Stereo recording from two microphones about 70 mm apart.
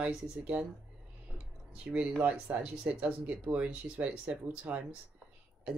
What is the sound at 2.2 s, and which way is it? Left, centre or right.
Speech, right.